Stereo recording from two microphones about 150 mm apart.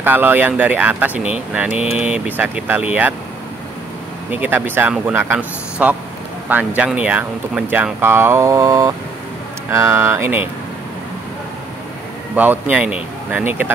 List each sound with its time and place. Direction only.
0.0 s speech: 15° right (ahead or behind)
4.3 s speech: 10° right (ahead or behind)
12.4 s speech: 10° right (ahead or behind)